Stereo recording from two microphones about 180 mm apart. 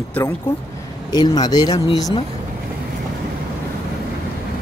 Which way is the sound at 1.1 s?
25° left (ahead or behind).